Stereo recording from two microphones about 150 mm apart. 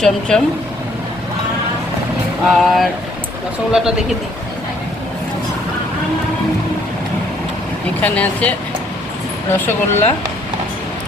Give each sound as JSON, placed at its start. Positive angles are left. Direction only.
{"t": 0.0, "sound": "speech", "side_deg": 5}
{"t": 2.5, "sound": "speech", "side_deg": 0}
{"t": 8.0, "sound": "speech", "side_deg": 10}